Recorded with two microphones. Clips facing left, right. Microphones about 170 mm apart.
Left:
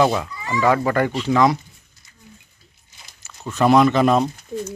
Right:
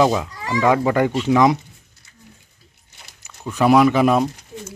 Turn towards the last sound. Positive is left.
turn(degrees=-10)  # may be behind; listen again after turning